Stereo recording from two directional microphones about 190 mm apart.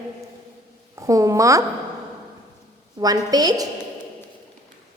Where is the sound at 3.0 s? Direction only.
20° right (ahead or behind).